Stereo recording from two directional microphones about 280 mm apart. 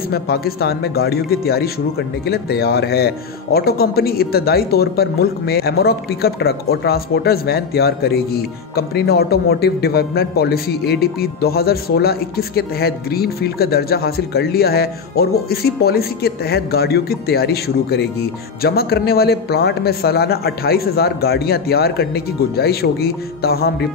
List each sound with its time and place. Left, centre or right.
0.1 s speech: left